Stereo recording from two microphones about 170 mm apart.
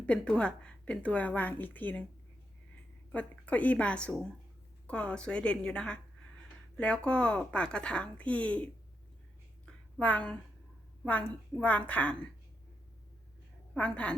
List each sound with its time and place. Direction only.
0.0 s a woman's voice: 5° left (ahead or behind)
3.1 s a woman's voice: 10° left (ahead or behind)
9.6 s a sound: 5° left (ahead or behind)
11.0 s a woman's voice: 5° left (ahead or behind)
13.7 s a woman's voice: 5° left (ahead or behind)